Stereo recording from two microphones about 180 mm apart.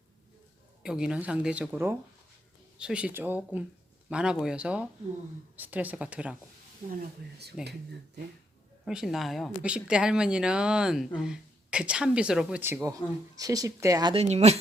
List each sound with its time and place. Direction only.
0.8 s speech: 5° right (ahead or behind)
7.6 s speech: centre (ahead or behind)
8.8 s speech: centre (ahead or behind); by 14.6 s 35° right (ahead or behind)